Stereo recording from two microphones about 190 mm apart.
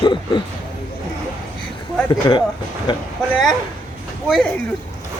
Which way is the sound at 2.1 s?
25° left (ahead or behind).